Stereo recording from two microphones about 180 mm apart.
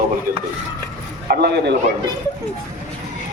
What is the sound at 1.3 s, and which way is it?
Speech, 70° right (ahead or behind).